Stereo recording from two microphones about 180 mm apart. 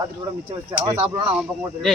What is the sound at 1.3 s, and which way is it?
Speech, centre (ahead or behind).